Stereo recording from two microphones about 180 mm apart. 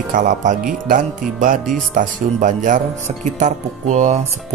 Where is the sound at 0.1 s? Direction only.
45° right (ahead or behind).